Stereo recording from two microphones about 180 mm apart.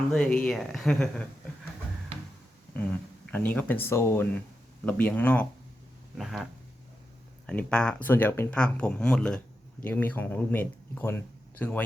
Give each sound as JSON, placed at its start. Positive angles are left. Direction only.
{"t": 0.1, "sound": "speech", "side_deg": 5}
{"t": 3.3, "sound": "speech", "side_deg": 10}